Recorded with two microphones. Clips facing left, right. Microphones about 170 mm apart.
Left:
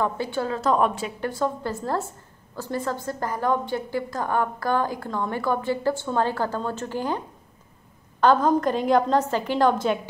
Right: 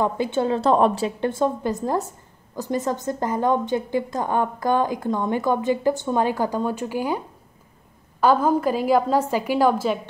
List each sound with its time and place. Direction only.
0.0 s a woman's voice: 20° right (ahead or behind)